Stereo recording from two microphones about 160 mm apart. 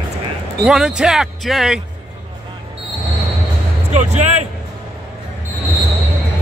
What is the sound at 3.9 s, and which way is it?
Speech, 45° right (ahead or behind).